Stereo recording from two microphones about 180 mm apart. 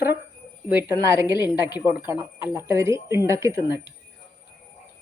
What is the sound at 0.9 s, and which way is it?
Speech, 15° right (ahead or behind).